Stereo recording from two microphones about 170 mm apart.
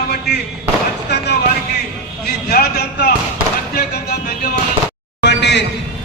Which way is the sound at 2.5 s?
70° left (ahead or behind).